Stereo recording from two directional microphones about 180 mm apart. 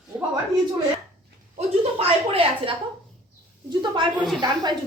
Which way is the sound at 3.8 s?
25° right (ahead or behind).